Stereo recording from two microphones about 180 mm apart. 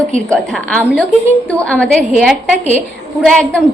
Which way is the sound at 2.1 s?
5° right (ahead or behind).